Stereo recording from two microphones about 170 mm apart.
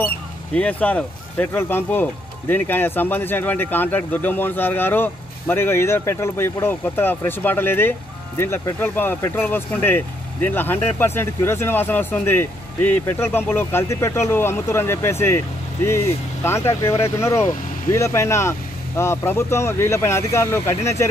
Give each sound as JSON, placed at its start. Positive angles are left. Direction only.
{"t": 0.6, "sound": "speech", "side_deg": 10}